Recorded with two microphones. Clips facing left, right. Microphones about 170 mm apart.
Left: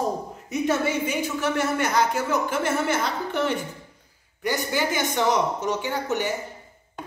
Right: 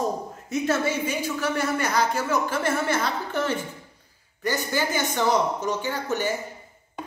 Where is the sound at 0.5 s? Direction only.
15° left (ahead or behind).